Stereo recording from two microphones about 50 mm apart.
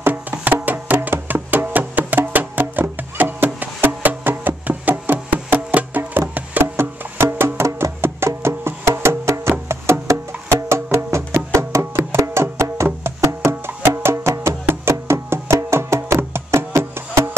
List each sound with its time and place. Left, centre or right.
0.3 s music: right
11.8 s music: right
12.2 s music: right
13.2 s music: right
13.7 s music: right
14.1 s music: right